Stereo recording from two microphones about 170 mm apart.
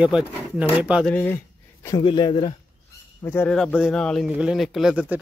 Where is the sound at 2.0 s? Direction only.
30° left (ahead or behind).